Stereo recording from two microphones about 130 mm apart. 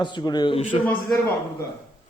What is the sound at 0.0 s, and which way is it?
Speech, 35° left (ahead or behind).